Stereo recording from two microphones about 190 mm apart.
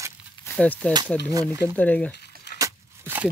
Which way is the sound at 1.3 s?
20° right (ahead or behind).